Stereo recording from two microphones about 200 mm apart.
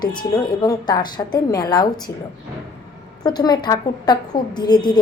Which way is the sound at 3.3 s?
20° left (ahead or behind).